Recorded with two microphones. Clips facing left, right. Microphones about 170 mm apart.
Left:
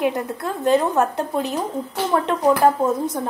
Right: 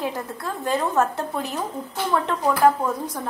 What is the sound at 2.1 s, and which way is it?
A woman's voice, 30° left (ahead or behind).